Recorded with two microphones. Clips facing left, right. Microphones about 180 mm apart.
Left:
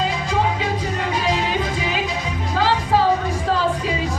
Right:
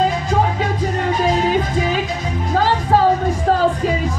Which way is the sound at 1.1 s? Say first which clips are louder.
Right 5 dB; 45° right (ahead or behind).